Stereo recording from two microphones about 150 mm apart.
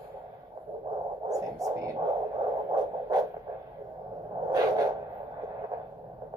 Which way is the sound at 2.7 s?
25° right (ahead or behind).